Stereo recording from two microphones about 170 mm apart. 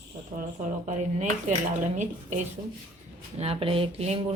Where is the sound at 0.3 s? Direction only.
45° right (ahead or behind).